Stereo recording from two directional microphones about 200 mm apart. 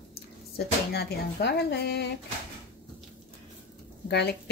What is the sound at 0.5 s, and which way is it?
Speech, 55° left (ahead or behind).